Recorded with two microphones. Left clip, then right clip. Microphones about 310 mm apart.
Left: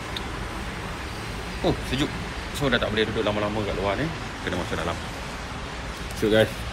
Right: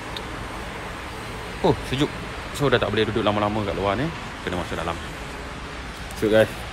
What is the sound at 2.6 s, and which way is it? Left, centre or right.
Speech, centre.